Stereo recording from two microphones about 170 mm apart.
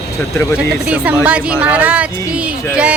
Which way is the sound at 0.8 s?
5° right (ahead or behind).